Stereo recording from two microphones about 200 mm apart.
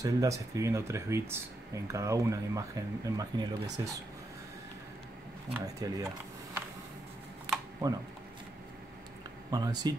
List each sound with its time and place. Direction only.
0.0 s speech: 15° right (ahead or behind)
5.8 s speech: 15° right (ahead or behind)
7.8 s speech: 15° right (ahead or behind)
9.5 s speech: 20° right (ahead or behind)